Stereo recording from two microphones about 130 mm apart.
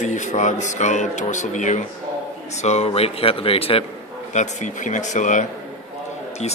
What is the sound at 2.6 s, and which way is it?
Speech, 55° left (ahead or behind).